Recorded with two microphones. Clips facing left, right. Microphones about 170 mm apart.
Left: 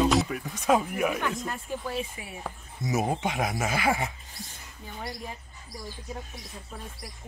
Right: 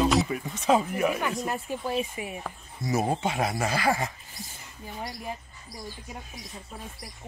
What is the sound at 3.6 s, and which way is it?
Dog, 20° left (ahead or behind).